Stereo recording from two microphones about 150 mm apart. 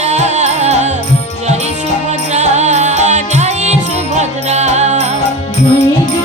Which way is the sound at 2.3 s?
50° right (ahead or behind).